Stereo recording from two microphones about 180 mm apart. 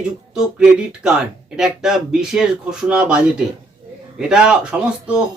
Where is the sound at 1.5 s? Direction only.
5° right (ahead or behind).